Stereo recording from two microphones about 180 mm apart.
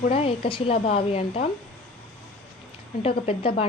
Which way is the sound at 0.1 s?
30° left (ahead or behind).